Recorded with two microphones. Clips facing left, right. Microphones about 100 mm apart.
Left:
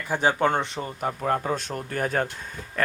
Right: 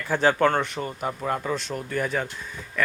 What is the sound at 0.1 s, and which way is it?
Speech, 15° left (ahead or behind).